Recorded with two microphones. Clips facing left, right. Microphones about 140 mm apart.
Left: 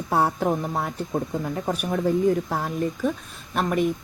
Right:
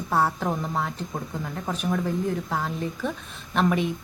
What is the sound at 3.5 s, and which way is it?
Speech, centre (ahead or behind).